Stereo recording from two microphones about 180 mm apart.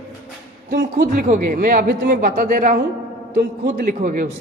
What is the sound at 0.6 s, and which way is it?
A man's voice, 55° right (ahead or behind).